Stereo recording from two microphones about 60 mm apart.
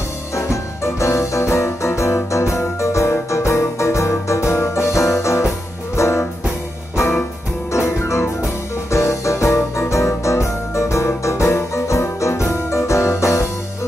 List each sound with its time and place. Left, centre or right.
0.4 s music: left